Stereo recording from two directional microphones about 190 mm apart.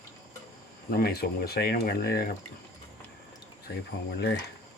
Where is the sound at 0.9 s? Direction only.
55° left (ahead or behind).